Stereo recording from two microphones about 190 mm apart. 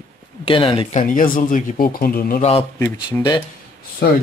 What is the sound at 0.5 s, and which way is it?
Speech, 25° left (ahead or behind).